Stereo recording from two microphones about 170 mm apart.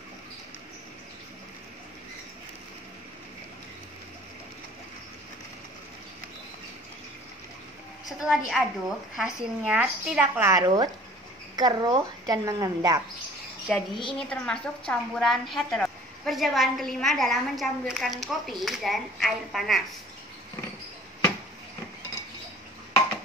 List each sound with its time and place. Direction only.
8.0 s a woman's voice: centre (ahead or behind)
10.4 s a woman's voice: 20° right (ahead or behind)
13.7 s a woman's voice: centre (ahead or behind)